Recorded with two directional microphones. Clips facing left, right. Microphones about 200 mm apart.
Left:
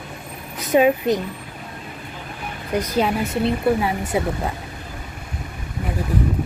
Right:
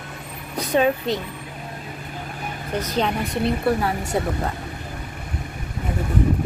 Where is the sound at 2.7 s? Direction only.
10° left (ahead or behind).